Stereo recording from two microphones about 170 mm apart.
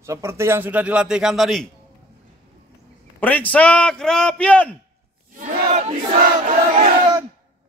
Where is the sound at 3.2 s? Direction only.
10° left (ahead or behind).